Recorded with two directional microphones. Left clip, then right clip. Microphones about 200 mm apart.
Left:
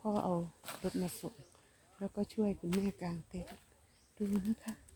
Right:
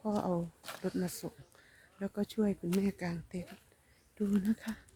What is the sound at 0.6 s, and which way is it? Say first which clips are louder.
Speech: right 2 dB; centre (ahead or behind).